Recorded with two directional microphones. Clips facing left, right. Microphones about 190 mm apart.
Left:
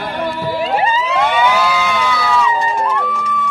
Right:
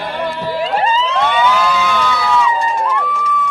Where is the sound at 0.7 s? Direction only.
10° left (ahead or behind).